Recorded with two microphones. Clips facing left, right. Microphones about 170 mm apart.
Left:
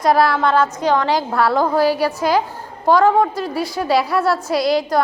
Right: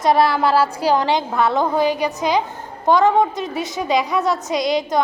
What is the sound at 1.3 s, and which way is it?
Speech, 20° right (ahead or behind).